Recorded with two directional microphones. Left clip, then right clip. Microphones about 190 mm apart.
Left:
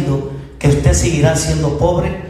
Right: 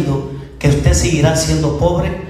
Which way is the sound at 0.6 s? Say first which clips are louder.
Left 1 dB; 50° left (ahead or behind).